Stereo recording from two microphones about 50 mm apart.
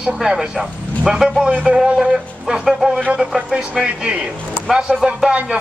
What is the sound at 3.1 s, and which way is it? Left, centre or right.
Speech, right.